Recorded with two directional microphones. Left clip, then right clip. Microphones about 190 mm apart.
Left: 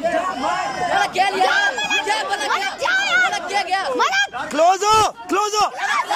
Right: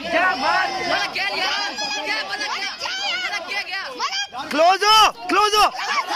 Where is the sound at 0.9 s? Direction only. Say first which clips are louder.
Left 5 dB; 55° left (ahead or behind).